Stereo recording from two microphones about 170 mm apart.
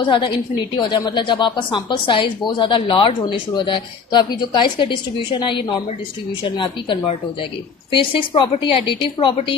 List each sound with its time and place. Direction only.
0.0 s a woman's voice: 30° left (ahead or behind)